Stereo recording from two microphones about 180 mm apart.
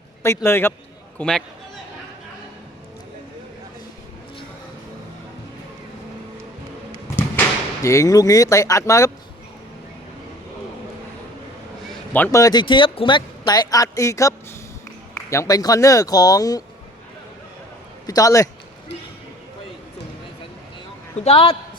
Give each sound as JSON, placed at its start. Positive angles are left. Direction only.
{"t": 0.2, "sound": "a man's voice", "side_deg": 15}
{"t": 1.2, "sound": "a man's voice", "side_deg": 0}
{"t": 7.2, "sound": "speech", "side_deg": 15}
{"t": 12.1, "sound": "speech", "side_deg": 15}
{"t": 18.0, "sound": "a man's voice", "side_deg": 20}
{"t": 21.2, "sound": "a man's voice", "side_deg": 30}